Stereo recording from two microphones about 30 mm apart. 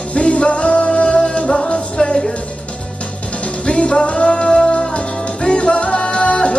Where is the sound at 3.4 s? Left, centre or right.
Left.